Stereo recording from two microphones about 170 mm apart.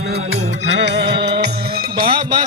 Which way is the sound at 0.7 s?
90° right.